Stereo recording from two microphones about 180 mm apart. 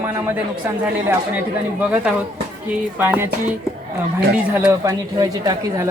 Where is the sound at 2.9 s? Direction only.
10° right (ahead or behind).